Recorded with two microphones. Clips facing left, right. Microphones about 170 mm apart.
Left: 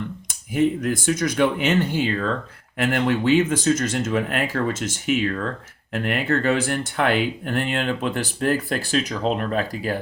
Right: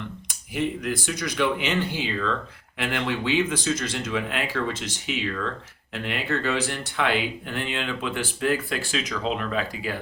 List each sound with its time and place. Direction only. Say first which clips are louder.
0.3 s speech: left 7 dB; 45° left (ahead or behind)